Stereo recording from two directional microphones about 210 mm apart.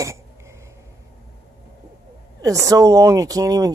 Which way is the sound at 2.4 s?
15° right (ahead or behind).